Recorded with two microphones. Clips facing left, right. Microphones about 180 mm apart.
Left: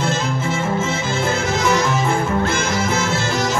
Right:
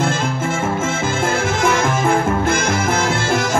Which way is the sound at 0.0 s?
50° right (ahead or behind).